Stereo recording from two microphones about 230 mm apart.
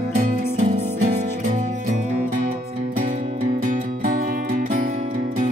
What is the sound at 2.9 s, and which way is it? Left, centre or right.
Music, right.